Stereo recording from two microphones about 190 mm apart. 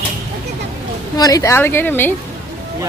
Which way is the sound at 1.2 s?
20° left (ahead or behind).